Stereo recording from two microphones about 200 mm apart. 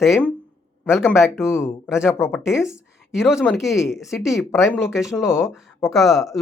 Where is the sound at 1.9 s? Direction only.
5° right (ahead or behind).